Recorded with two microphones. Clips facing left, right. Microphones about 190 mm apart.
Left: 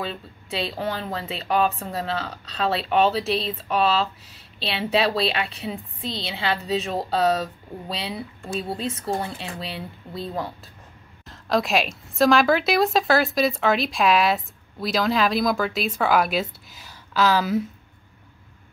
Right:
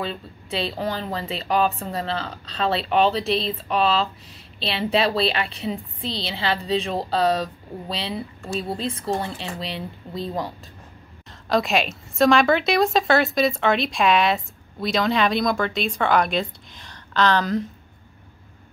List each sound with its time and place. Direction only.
0.0 s a woman's voice: centre (ahead or behind)
8.7 s speech: 30° right (ahead or behind)
9.6 s a woman's voice: 5° left (ahead or behind)